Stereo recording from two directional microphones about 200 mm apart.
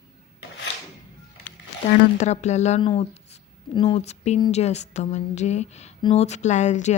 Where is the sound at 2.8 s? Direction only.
25° left (ahead or behind).